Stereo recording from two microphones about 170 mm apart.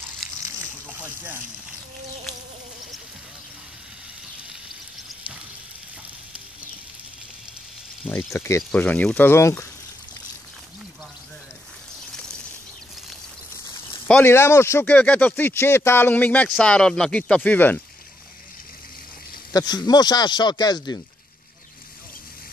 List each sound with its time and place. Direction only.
0.2 s a sound: centre (ahead or behind)
8.1 s speech: 10° left (ahead or behind)
14.0 s speech: 10° left (ahead or behind)
19.5 s speech: 25° left (ahead or behind)